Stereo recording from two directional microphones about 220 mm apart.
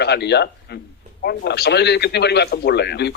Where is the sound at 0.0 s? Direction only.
50° left (ahead or behind).